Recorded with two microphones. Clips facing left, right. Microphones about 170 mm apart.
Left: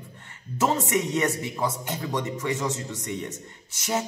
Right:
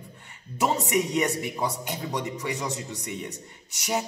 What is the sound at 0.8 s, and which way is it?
Speech, 15° right (ahead or behind).